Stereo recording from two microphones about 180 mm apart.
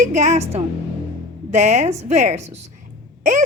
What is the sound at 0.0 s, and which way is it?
A woman's voice, 40° right (ahead or behind).